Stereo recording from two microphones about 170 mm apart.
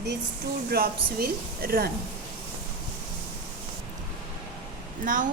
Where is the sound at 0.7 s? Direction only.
60° right (ahead or behind).